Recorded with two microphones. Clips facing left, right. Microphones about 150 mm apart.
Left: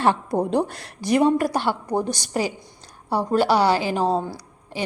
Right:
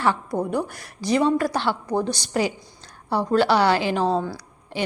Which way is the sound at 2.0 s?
45° left (ahead or behind).